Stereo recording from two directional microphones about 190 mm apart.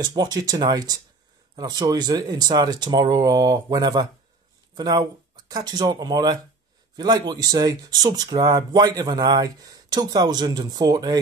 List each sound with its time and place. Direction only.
0.0 s speech: 20° right (ahead or behind)